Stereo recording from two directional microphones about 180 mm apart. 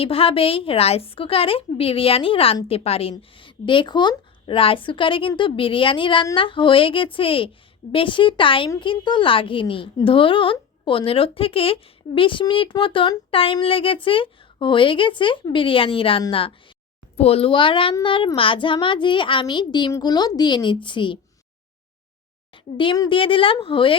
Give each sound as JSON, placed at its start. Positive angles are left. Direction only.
{"t": 0.0, "sound": "a woman's voice", "side_deg": 30}
{"t": 22.5, "sound": "a woman's voice", "side_deg": 30}